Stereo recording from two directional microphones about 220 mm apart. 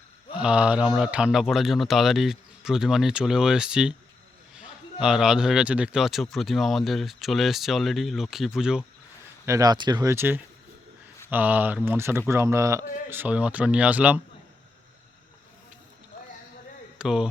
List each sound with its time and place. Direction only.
0.3 s speech: 5° right (ahead or behind)
9.5 s speech: 15° right (ahead or behind)
17.0 s speech: 5° right (ahead or behind)